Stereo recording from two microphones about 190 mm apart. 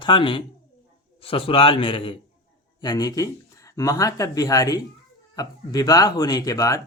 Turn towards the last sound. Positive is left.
turn(degrees=15)  # may be behind; listen again after turning